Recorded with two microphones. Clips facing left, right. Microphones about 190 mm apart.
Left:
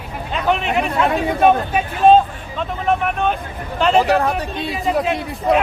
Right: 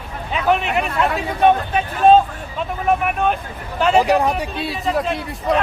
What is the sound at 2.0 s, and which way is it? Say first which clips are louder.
Speech: even; centre (ahead or behind).